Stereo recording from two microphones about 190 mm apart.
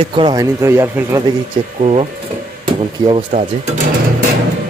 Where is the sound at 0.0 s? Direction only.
25° right (ahead or behind).